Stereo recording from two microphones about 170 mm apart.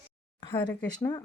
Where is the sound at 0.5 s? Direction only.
20° left (ahead or behind).